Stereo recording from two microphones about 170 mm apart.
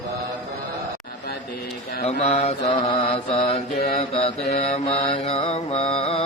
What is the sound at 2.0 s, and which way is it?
Mantra, 40° left (ahead or behind).